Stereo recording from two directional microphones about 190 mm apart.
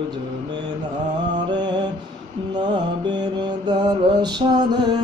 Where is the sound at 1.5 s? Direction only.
20° right (ahead or behind).